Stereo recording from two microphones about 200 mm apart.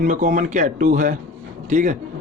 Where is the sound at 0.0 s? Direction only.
40° right (ahead or behind).